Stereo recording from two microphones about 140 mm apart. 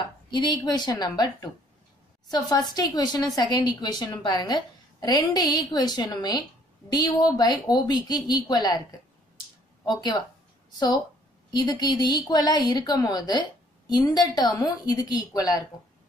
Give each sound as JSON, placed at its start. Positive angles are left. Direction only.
{"t": 0.3, "sound": "a woman's voice", "side_deg": 30}
{"t": 9.8, "sound": "a woman's voice", "side_deg": 30}
{"t": 11.5, "sound": "a woman's voice", "side_deg": 30}